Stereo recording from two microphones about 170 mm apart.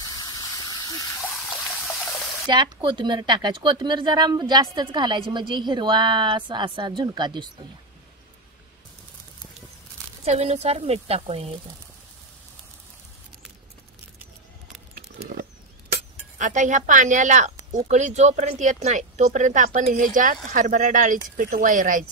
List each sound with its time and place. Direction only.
0.0 s hiss: 20° left (ahead or behind)
1.5 s water: 5° left (ahead or behind)
2.4 s speech: 25° right (ahead or behind)
10.2 s a woman's voice: 40° right (ahead or behind)
15.9 s speech: 50° right (ahead or behind)